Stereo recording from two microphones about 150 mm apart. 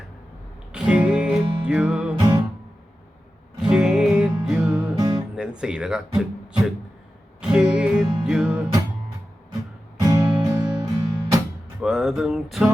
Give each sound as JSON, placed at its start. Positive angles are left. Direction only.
{"t": 0.7, "sound": "music", "side_deg": -5}
{"t": 3.6, "sound": "music", "side_deg": -5}
{"t": 4.9, "sound": "music", "side_deg": -25}
{"t": 5.4, "sound": "speech", "side_deg": -5}
{"t": 7.4, "sound": "music", "side_deg": -5}
{"t": 10.0, "sound": "music", "side_deg": -20}
{"t": 11.8, "sound": "music", "side_deg": 0}